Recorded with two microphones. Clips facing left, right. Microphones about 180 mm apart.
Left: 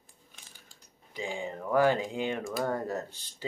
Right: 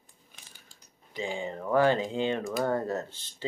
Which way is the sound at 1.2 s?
20° right (ahead or behind).